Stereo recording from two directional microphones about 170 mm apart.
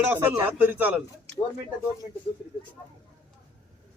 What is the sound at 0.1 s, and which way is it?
Speech, 10° right (ahead or behind).